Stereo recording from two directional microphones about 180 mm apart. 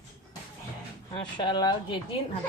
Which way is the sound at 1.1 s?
25° left (ahead or behind).